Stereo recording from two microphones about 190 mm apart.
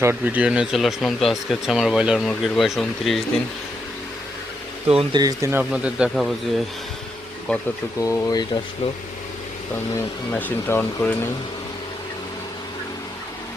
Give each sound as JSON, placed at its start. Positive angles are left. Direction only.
{"t": 0.0, "sound": "speech", "side_deg": -10}
{"t": 4.9, "sound": "speech", "side_deg": -20}
{"t": 8.0, "sound": "speech", "side_deg": 20}
{"t": 10.3, "sound": "speech", "side_deg": 10}